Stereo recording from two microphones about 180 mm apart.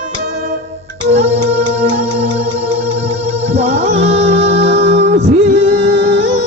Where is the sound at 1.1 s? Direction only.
35° right (ahead or behind).